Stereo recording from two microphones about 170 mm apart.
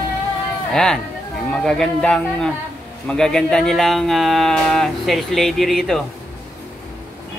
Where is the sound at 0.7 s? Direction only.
5° left (ahead or behind).